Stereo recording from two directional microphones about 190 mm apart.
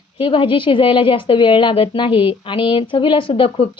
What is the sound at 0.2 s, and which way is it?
A woman's voice, 25° left (ahead or behind).